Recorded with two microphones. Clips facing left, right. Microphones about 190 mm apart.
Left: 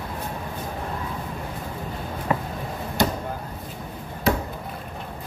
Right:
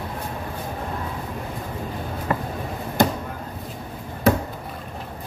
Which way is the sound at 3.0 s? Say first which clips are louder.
Right 3 dB; 50° right (ahead or behind).